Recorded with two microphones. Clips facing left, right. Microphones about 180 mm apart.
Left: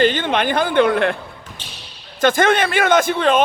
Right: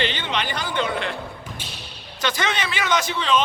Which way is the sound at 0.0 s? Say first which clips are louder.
Left 9 dB; 50° left (ahead or behind).